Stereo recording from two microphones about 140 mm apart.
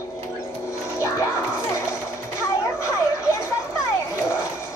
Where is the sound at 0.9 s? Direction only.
20° left (ahead or behind).